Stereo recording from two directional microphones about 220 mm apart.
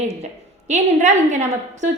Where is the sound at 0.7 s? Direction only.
35° right (ahead or behind).